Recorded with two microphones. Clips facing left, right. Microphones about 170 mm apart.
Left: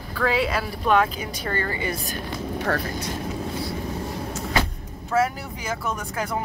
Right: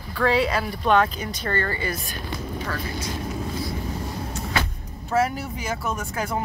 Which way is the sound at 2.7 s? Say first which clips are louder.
Left 8 dB; 60° left (ahead or behind).